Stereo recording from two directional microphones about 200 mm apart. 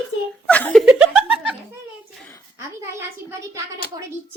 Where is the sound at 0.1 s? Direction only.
65° left (ahead or behind).